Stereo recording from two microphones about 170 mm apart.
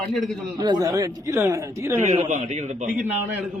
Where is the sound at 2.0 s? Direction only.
40° right (ahead or behind).